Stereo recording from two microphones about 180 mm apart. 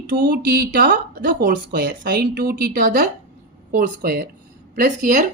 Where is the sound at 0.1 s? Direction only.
55° right (ahead or behind).